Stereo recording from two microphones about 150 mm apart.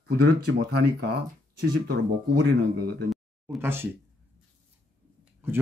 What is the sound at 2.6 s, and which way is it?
Speech, 85° right.